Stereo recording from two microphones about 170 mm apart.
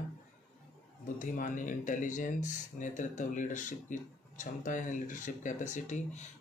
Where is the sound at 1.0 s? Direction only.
50° left (ahead or behind).